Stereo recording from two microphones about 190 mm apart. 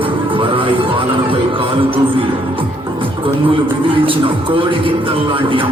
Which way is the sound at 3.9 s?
25° right (ahead or behind).